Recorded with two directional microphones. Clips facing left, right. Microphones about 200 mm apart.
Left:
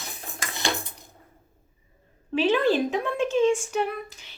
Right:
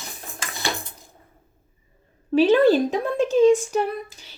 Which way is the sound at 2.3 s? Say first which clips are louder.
Right 6 dB; 40° right (ahead or behind).